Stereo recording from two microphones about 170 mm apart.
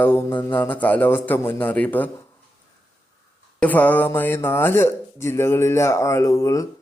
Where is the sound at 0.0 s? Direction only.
15° left (ahead or behind).